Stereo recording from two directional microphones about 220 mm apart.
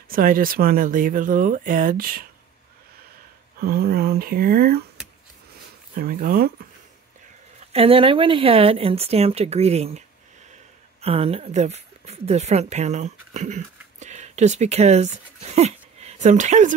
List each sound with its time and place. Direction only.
0.1 s speech: 40° right (ahead or behind)
3.6 s speech: 45° right (ahead or behind)
5.9 s speech: 40° right (ahead or behind)
7.7 s speech: 25° right (ahead or behind)